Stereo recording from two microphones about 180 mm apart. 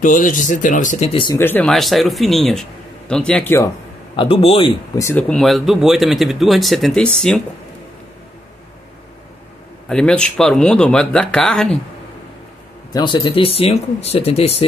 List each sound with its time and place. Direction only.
0.0 s speech: 45° left (ahead or behind)
1.1 s a man's voice: 25° left (ahead or behind)
1.4 s speech: 10° left (ahead or behind)
4.2 s a man's voice: 30° left (ahead or behind)
4.9 s speech: 15° left (ahead or behind)
5.3 s speech: centre (ahead or behind)
9.8 s speech: 5° left (ahead or behind)
12.9 s speech: 25° left (ahead or behind)